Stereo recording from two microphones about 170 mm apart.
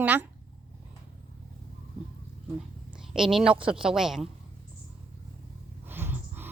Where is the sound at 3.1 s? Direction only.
Centre (ahead or behind).